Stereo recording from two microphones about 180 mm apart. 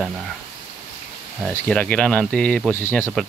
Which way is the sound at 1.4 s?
5° left (ahead or behind).